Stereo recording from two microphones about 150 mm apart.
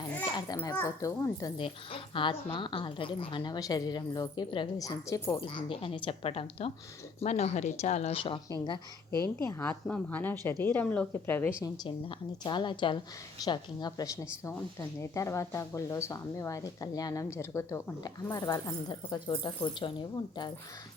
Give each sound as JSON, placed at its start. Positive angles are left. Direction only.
{"t": 0.3, "sound": "speech", "side_deg": 25}
{"t": 1.6, "sound": "a woman's voice", "side_deg": 35}
{"t": 5.4, "sound": "a woman's voice", "side_deg": 35}
{"t": 11.8, "sound": "a woman's voice", "side_deg": 30}